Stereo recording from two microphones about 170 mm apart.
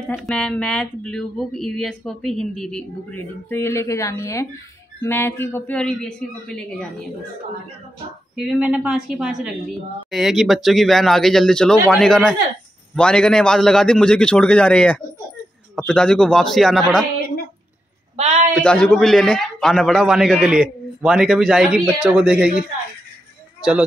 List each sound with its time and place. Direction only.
0.1 s speech: centre (ahead or behind)
8.4 s speech: 5° right (ahead or behind)
18.1 s a man's voice: 40° right (ahead or behind)
18.5 s speech: 5° left (ahead or behind)